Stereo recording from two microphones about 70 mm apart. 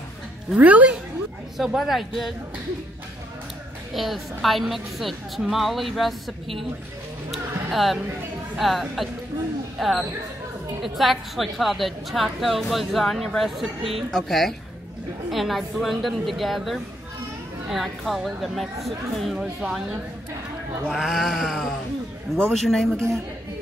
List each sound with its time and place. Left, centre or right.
0.6 s speech: right
1.6 s a woman's voice: centre
3.9 s a woman's voice: centre
7.2 s music: centre
8.5 s a woman's voice: centre